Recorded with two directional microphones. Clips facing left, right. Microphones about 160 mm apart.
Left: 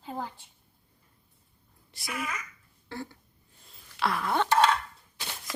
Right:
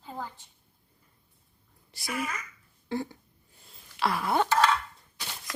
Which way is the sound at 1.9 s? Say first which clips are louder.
Right 2 dB; centre (ahead or behind).